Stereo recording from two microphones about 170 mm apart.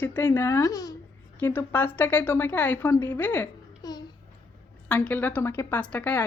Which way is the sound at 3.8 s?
25° left (ahead or behind).